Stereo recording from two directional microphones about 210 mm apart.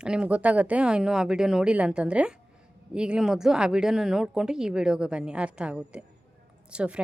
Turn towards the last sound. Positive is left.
turn(degrees=-5)  # may be behind; listen again after turning